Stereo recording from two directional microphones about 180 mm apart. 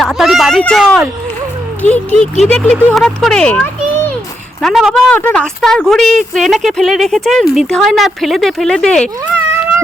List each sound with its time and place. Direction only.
0.0 s speech: centre (ahead or behind)